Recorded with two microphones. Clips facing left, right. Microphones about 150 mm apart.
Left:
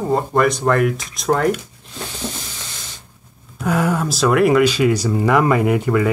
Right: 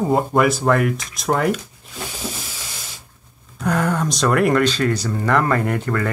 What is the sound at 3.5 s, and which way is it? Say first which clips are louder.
Speech: left 1 dB; 5° left (ahead or behind).